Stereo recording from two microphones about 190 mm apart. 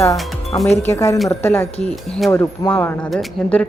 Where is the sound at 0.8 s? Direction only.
15° left (ahead or behind).